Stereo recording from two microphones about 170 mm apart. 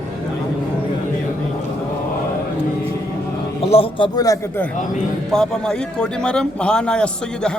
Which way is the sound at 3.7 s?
30° left (ahead or behind).